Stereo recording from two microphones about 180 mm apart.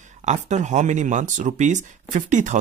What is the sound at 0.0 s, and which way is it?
Speech, 40° right (ahead or behind).